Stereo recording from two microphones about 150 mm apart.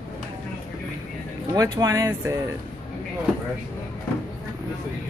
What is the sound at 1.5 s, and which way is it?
Speech, 25° right (ahead or behind).